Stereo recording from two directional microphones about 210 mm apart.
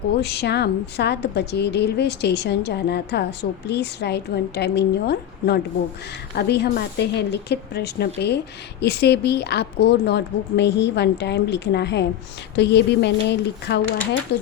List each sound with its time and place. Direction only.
0.1 s a woman's voice: 50° left (ahead or behind)